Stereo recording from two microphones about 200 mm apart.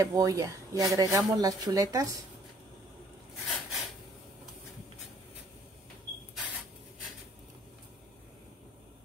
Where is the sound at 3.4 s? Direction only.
Centre (ahead or behind).